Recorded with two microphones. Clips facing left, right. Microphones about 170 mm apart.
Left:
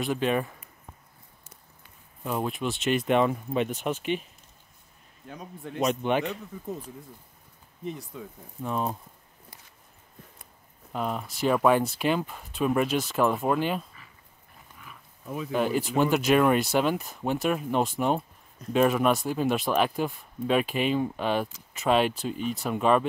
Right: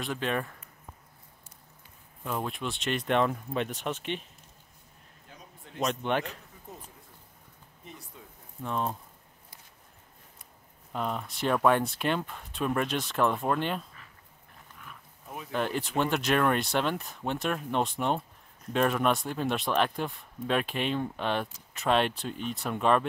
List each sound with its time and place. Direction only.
0.0 s speech: 5° left (ahead or behind)
2.2 s speech: 5° left (ahead or behind)
5.3 s a man's voice: 65° left (ahead or behind)
5.8 s speech: 5° left (ahead or behind)
7.8 s speech: 90° left
8.6 s speech: 5° left (ahead or behind)
10.9 s speech: 5° left (ahead or behind)
15.5 s speech: 5° left (ahead or behind)